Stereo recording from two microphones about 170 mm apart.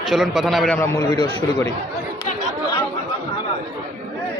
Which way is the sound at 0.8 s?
15° left (ahead or behind).